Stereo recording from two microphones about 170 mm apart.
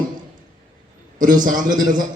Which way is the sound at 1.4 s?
50° right (ahead or behind).